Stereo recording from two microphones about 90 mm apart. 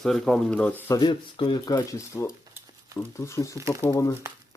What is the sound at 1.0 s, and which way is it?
Speech, 65° left (ahead or behind).